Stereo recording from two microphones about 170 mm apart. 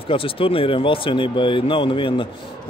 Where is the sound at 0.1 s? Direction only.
30° left (ahead or behind).